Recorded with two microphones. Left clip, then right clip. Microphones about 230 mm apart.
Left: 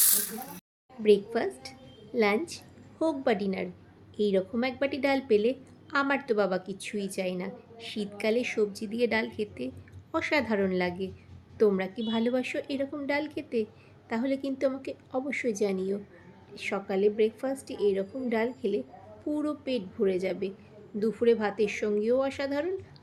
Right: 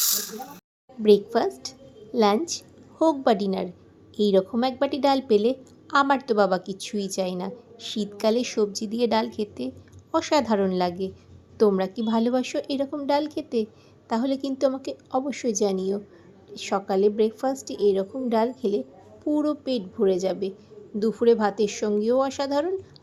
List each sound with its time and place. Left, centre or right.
1.0 s a woman's voice: right